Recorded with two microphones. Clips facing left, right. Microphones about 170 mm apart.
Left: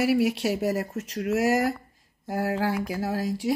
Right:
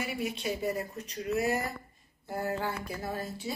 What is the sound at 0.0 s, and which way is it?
Speech, 75° left (ahead or behind).